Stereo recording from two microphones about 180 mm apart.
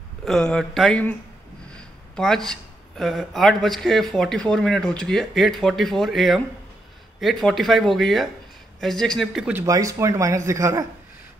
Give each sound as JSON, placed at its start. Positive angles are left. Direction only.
{"t": 0.2, "sound": "speech", "side_deg": 5}
{"t": 2.1, "sound": "speech", "side_deg": 5}